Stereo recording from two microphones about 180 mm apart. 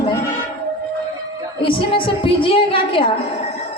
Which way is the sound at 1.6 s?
30° left (ahead or behind).